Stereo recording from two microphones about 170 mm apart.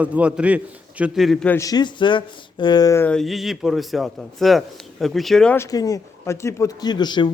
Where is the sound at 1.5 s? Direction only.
20° left (ahead or behind).